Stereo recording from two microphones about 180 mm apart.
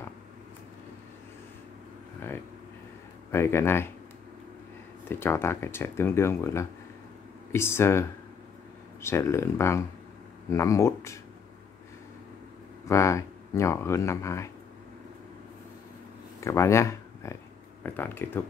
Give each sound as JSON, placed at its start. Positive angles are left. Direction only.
{"t": 3.3, "sound": "speech", "side_deg": 15}
{"t": 5.0, "sound": "speech", "side_deg": 15}
{"t": 12.8, "sound": "speech", "side_deg": 15}
{"t": 16.3, "sound": "speech", "side_deg": 15}